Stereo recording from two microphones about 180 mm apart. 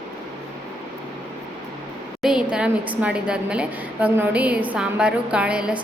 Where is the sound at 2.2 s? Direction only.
5° right (ahead or behind).